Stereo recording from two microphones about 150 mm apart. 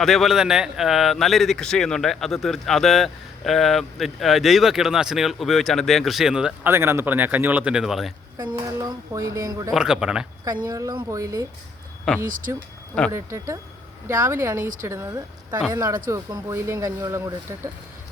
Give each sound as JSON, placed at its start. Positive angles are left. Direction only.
{"t": 0.0, "sound": "speech", "side_deg": 0}
{"t": 8.4, "sound": "speech", "side_deg": -30}
{"t": 9.7, "sound": "speech", "side_deg": -5}
{"t": 10.7, "sound": "speech", "side_deg": -25}
{"t": 12.2, "sound": "speech", "side_deg": -65}
{"t": 13.1, "sound": "a woman's voice", "side_deg": -20}